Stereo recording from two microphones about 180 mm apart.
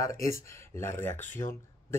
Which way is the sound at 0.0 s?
15° left (ahead or behind).